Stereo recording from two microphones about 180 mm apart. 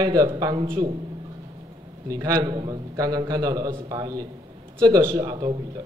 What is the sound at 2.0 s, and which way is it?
A man's voice, 20° right (ahead or behind).